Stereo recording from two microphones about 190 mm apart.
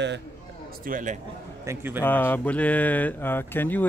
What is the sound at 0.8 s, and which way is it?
Speech, 45° right (ahead or behind).